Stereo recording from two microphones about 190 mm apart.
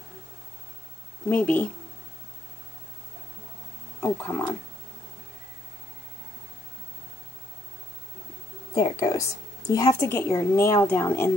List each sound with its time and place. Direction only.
1.3 s a woman's voice: 5° left (ahead or behind)
4.0 s a woman's voice: 10° left (ahead or behind)
8.7 s a woman's voice: 20° left (ahead or behind)